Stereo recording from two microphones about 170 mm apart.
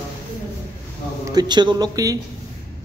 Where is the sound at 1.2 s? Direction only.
25° right (ahead or behind).